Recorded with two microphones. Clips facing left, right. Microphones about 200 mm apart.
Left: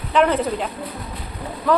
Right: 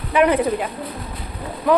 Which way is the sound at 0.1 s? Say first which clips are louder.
Right 2 dB; 10° right (ahead or behind).